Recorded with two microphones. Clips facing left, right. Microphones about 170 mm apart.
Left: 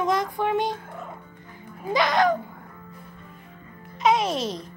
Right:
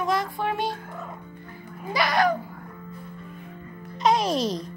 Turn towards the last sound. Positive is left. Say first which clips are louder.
# even
turn(degrees=5)  # may be behind; listen again after turning